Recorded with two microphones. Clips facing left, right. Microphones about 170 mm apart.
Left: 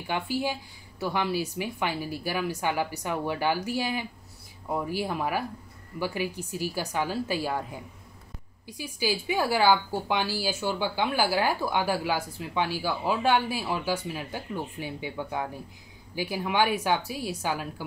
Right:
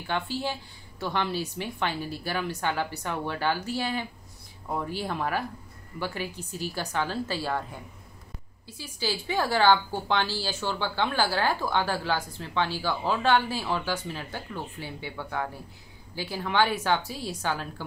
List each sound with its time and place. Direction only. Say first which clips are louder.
0.0 s a woman's voice: left 1 dB; 10° left (ahead or behind)